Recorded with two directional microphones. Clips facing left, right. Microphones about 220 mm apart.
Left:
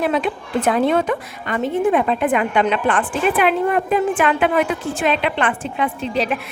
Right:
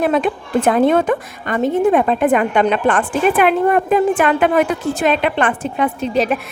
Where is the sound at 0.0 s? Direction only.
50° right (ahead or behind).